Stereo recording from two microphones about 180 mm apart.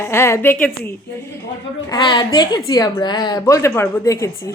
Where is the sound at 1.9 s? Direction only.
25° left (ahead or behind).